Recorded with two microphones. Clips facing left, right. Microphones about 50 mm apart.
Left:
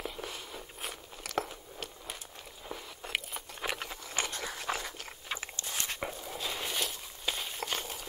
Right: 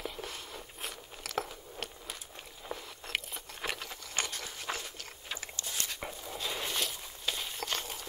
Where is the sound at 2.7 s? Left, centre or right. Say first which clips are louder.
Even; centre.